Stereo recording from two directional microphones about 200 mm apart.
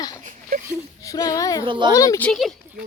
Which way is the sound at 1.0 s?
15° left (ahead or behind).